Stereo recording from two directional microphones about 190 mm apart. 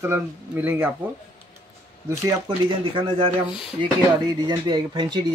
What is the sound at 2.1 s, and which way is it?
Speech, 25° right (ahead or behind).